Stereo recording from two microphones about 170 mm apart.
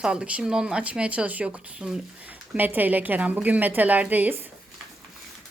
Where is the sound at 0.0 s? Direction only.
5° right (ahead or behind).